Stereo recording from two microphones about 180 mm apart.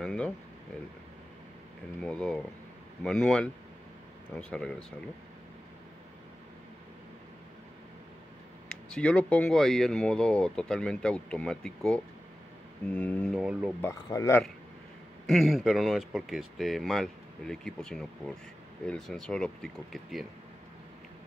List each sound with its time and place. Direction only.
0.0 s a sound: 5° left (ahead or behind)
2.0 s speech: 5° left (ahead or behind)
8.6 s speech: 5° left (ahead or behind)
14.0 s speech: 20° left (ahead or behind)
15.2 s speech: centre (ahead or behind)